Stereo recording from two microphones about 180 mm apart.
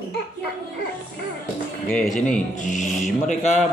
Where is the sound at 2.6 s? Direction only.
45° left (ahead or behind).